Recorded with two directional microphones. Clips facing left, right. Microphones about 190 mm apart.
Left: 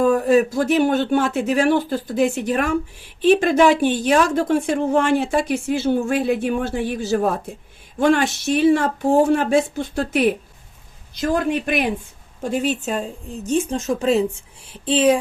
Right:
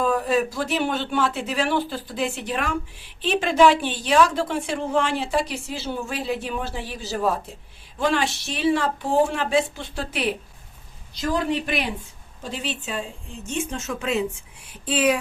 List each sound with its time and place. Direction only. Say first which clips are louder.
0.0 s speech: left 6 dB; 50° left (ahead or behind); by 15.2 s 25° left (ahead or behind)